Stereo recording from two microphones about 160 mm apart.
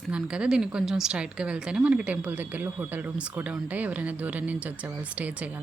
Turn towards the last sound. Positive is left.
turn(degrees=-10)  # may be behind; listen again after turning